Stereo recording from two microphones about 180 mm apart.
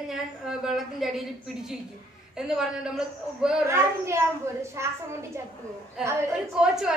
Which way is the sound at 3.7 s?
15° right (ahead or behind).